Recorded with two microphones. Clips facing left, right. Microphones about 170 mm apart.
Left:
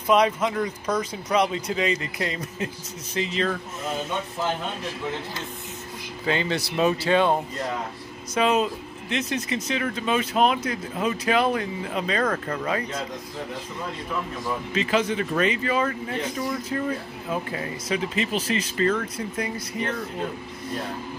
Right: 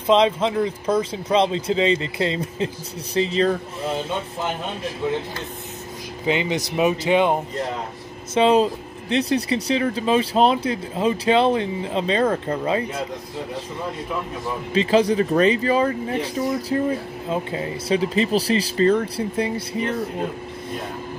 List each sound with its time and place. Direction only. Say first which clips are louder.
0.0 s speech: right 3 dB; 25° right (ahead or behind)
6.2 s speech: right 3 dB; 15° right (ahead or behind)
8.4 s speech: right 5 dB; 30° right (ahead or behind)
14.7 s speech: right 7 dB; 30° right (ahead or behind)